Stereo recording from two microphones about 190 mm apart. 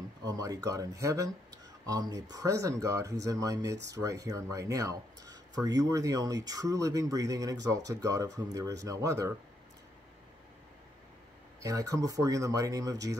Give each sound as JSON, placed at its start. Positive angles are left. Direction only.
{"t": 0.2, "sound": "speech", "side_deg": -20}
{"t": 11.6, "sound": "speech", "side_deg": -20}